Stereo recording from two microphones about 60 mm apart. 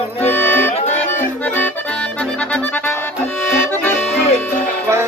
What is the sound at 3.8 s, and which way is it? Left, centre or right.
Accordion, left.